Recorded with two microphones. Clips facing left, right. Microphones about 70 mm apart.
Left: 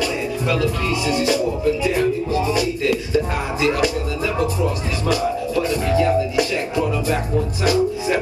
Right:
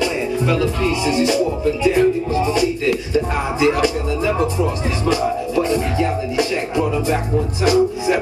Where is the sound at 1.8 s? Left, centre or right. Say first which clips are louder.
Right 4 dB; right.